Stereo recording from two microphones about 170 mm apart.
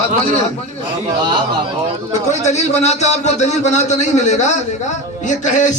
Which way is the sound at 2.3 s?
40° left (ahead or behind).